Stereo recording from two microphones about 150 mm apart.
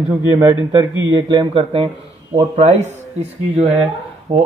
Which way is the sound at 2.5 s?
50° right (ahead or behind).